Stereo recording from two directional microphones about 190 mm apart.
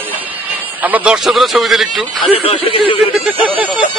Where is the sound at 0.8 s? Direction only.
5° right (ahead or behind).